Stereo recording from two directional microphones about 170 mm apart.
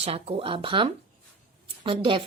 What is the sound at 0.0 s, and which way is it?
A woman's voice, 35° right (ahead or behind).